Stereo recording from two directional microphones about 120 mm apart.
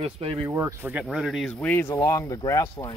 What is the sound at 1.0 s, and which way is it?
Speech, 5° right (ahead or behind).